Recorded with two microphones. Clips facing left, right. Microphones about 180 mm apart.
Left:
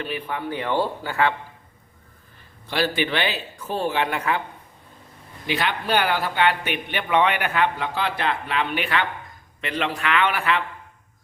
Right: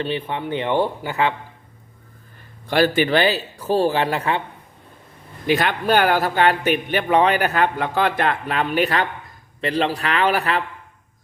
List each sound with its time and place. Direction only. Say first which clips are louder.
0.0 s speech: right 4 dB; 25° right (ahead or behind)
2.6 s speech: right 6 dB; 50° right (ahead or behind); by 4.4 s 30° right (ahead or behind)
5.5 s a man's voice: right 5 dB; 45° right (ahead or behind)